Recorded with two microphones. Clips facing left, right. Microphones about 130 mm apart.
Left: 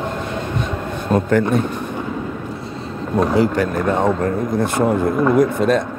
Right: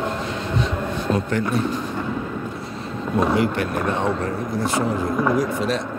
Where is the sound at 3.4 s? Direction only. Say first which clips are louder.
Left 4 dB; 40° left (ahead or behind).